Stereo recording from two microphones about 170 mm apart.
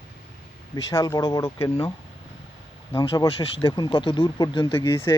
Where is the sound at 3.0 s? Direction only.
30° left (ahead or behind); by 5.1 s 15° left (ahead or behind).